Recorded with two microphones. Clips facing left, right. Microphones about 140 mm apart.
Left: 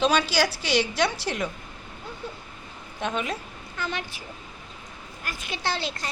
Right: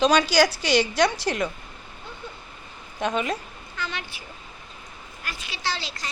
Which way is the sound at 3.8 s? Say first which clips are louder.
Left 2 dB; 45° left (ahead or behind).